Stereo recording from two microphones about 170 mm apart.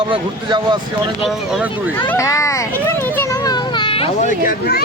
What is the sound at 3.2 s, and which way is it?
Children playing, 25° left (ahead or behind).